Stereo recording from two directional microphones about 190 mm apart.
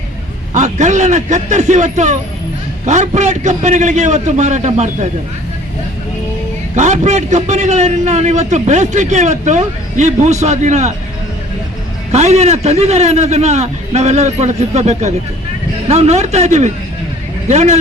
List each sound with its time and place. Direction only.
0.5 s a man's voice: 40° right (ahead or behind)
6.7 s a man's voice: 35° right (ahead or behind)
12.1 s a man's voice: 35° right (ahead or behind)